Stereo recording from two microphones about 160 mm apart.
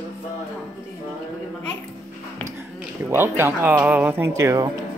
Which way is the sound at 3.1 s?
15° right (ahead or behind).